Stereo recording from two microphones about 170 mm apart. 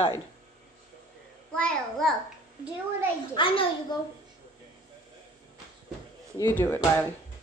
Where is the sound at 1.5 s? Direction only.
5° left (ahead or behind).